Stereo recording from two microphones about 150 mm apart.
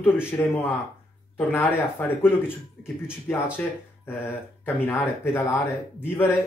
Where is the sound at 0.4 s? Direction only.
10° left (ahead or behind).